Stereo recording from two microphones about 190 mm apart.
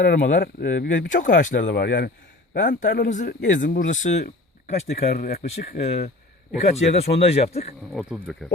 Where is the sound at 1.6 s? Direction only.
65° left (ahead or behind); by 3.6 s 40° left (ahead or behind).